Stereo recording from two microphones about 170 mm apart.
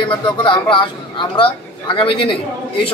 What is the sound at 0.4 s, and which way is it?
A man's voice, 30° left (ahead or behind).